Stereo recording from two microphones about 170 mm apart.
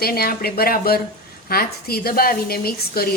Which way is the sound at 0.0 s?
60° left (ahead or behind).